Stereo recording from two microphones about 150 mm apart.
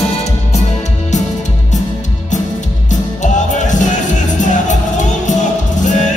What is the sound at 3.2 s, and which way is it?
Music, 55° left (ahead or behind).